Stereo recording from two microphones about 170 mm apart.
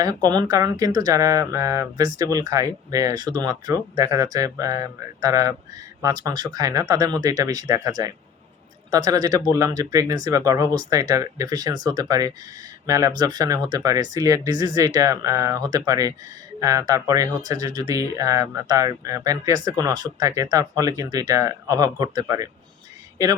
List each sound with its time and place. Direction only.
0.0 s speech: 20° right (ahead or behind)